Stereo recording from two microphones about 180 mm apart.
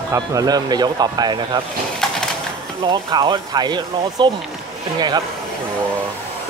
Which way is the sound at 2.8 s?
25° right (ahead or behind).